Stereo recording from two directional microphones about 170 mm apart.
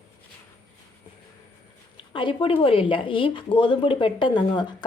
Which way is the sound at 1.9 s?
30° left (ahead or behind).